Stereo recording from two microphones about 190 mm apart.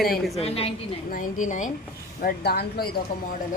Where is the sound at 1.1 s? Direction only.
45° left (ahead or behind).